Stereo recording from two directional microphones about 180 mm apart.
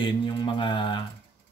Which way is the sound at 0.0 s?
25° left (ahead or behind).